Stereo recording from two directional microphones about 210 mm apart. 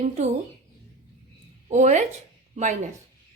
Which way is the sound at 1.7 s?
35° right (ahead or behind).